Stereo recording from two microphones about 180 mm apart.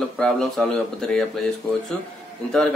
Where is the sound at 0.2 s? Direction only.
5° left (ahead or behind).